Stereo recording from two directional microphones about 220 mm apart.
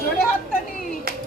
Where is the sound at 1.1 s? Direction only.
40° right (ahead or behind).